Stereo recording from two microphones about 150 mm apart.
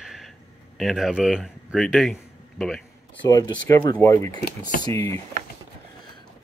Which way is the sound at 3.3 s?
25° left (ahead or behind).